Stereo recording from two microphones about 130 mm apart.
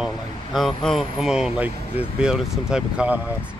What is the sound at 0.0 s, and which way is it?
Speech, centre (ahead or behind).